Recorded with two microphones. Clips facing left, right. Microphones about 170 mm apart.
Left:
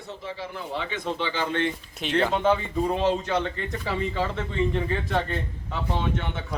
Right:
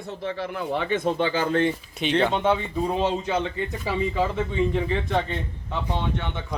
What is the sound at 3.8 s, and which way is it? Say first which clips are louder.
Speech: right 3 dB; 10° right (ahead or behind).